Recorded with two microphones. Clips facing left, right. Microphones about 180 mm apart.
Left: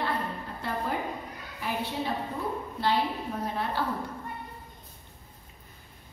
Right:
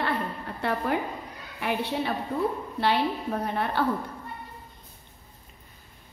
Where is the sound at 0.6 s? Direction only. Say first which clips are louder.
Right 5 dB; 65° right (ahead or behind).